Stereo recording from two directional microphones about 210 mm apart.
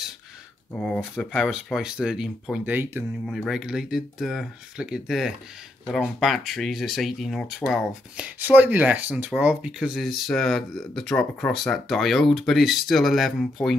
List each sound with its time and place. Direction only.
0.7 s speech: 5° left (ahead or behind)